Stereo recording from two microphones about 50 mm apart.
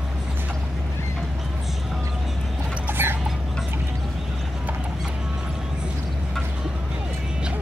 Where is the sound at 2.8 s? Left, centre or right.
Right.